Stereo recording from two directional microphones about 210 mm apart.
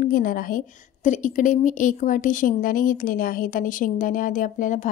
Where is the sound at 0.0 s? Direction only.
45° left (ahead or behind).